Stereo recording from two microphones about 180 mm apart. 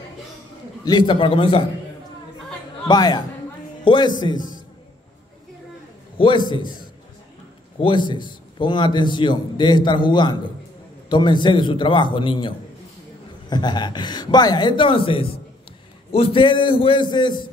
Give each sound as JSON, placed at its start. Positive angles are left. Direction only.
{"t": 0.8, "sound": "a man's voice", "side_deg": 25}
{"t": 2.9, "sound": "a man's voice", "side_deg": 25}
{"t": 6.1, "sound": "a man's voice", "side_deg": 25}
{"t": 7.8, "sound": "a man's voice", "side_deg": 25}